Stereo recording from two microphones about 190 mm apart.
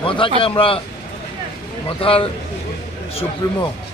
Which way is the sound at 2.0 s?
30° left (ahead or behind).